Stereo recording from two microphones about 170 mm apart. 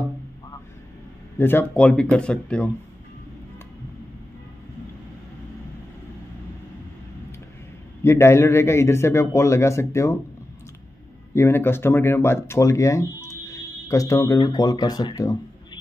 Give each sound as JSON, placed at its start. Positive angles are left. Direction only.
{"t": 1.4, "sound": "a man's voice", "side_deg": 10}
{"t": 8.0, "sound": "a man's voice", "side_deg": 15}
{"t": 11.3, "sound": "a man's voice", "side_deg": 15}